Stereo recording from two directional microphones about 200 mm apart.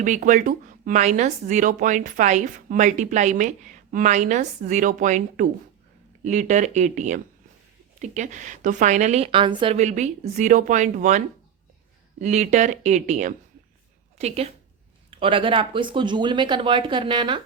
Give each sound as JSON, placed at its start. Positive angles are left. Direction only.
{"t": 0.0, "sound": "speech", "side_deg": -40}
{"t": 12.2, "sound": "speech", "side_deg": -35}